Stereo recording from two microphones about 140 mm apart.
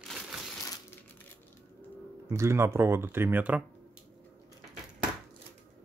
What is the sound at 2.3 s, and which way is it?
Speech, 20° right (ahead or behind).